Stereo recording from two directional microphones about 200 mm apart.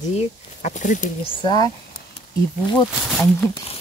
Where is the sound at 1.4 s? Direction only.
20° left (ahead or behind).